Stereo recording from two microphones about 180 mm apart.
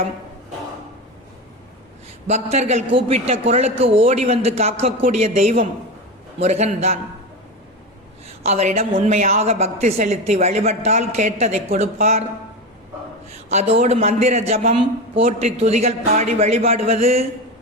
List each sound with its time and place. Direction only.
2.2 s a woman's voice: 40° right (ahead or behind)
8.3 s a woman's voice: 40° right (ahead or behind)
13.3 s a woman's voice: 35° right (ahead or behind)